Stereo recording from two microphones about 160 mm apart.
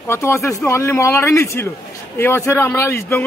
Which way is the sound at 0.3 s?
20° left (ahead or behind).